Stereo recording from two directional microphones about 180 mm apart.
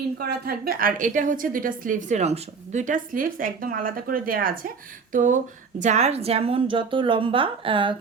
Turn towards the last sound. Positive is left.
turn(degrees=-30)  # may be behind; listen again after turning